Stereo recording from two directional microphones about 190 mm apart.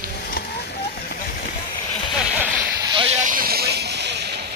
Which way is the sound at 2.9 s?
30° right (ahead or behind).